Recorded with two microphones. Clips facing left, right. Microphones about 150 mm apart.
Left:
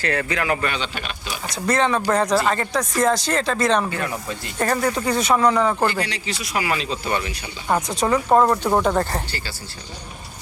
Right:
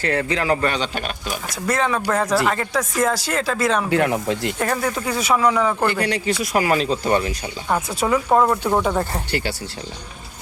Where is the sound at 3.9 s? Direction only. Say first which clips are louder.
Right 8 dB; 65° right (ahead or behind).